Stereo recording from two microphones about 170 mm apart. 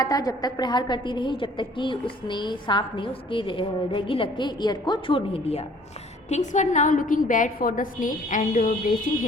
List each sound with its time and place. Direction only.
0.0 s a woman's voice: 20° left (ahead or behind); by 9.2 s 55° left (ahead or behind)